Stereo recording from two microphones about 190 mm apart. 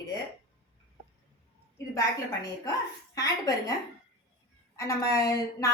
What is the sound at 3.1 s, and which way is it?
Speech, 20° left (ahead or behind).